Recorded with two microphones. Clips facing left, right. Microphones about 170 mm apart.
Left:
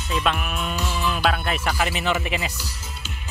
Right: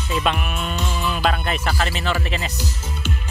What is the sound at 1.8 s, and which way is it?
Speech, 15° left (ahead or behind).